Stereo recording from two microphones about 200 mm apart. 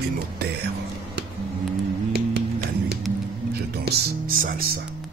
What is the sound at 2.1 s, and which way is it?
Music, 55° right (ahead or behind).